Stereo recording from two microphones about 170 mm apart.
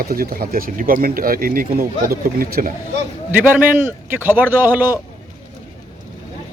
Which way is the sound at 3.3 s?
10° right (ahead or behind).